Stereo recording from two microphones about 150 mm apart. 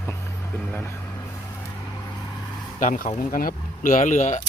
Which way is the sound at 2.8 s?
60° left (ahead or behind).